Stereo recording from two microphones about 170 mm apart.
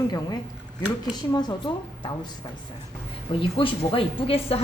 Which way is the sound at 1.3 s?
25° left (ahead or behind).